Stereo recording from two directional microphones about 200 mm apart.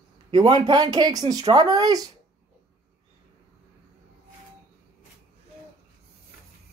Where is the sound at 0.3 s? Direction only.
20° right (ahead or behind).